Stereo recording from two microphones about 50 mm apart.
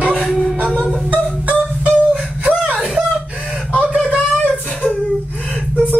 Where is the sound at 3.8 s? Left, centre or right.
Right.